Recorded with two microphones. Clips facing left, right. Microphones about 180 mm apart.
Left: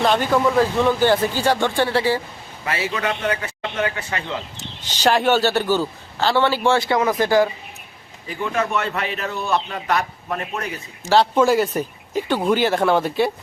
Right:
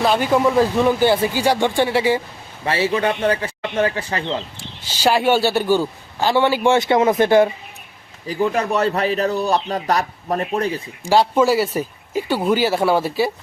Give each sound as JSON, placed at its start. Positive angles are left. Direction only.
{"t": 0.0, "sound": "a man's voice", "side_deg": -5}
{"t": 0.3, "sound": "a man's voice", "side_deg": -15}
{"t": 2.6, "sound": "speech", "side_deg": -30}
{"t": 4.9, "sound": "a man's voice", "side_deg": -10}
{"t": 8.3, "sound": "a man's voice", "side_deg": -35}
{"t": 11.0, "sound": "a man's voice", "side_deg": -10}